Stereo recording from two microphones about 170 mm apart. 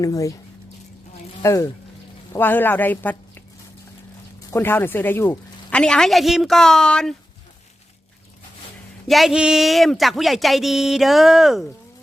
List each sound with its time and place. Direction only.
0.0 s speech: 20° left (ahead or behind)
1.4 s speech: 20° left (ahead or behind)
5.8 s speech: 5° left (ahead or behind)
9.0 s speech: centre (ahead or behind)